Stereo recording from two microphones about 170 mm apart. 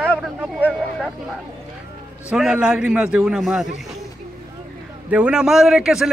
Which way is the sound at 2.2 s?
5° right (ahead or behind).